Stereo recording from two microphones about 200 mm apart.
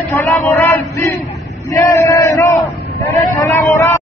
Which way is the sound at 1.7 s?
15° left (ahead or behind).